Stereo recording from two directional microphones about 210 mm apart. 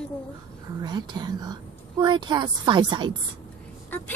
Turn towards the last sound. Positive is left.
turn(degrees=-20)  # may be behind; listen again after turning